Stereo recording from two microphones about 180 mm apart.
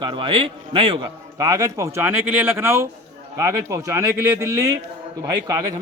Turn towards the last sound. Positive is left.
turn(degrees=-20)  # may be behind; listen again after turning